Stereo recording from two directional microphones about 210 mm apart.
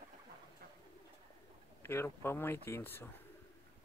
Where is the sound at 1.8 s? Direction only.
10° left (ahead or behind).